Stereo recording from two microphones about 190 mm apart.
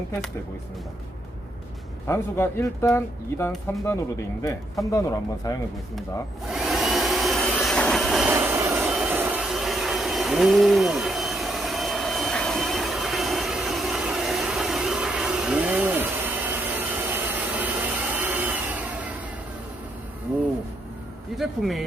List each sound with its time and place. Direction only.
2.0 s speech: 10° left (ahead or behind)
6.5 s vacuum cleaner: centre (ahead or behind)
8.3 s vehicle: 10° right (ahead or behind)
17.6 s vacuum cleaner: 10° right (ahead or behind)
21.3 s speech: centre (ahead or behind)